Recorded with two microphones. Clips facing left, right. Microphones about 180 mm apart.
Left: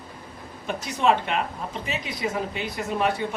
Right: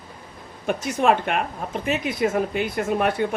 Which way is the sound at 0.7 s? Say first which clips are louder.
Right 3 dB; 50° right (ahead or behind).